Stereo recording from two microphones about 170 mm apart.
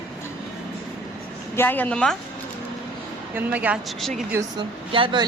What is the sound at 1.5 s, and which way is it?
Speech, 10° left (ahead or behind).